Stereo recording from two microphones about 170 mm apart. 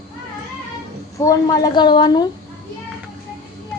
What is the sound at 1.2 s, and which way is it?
A woman's voice, 20° left (ahead or behind).